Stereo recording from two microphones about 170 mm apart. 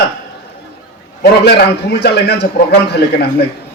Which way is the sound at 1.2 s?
80° left.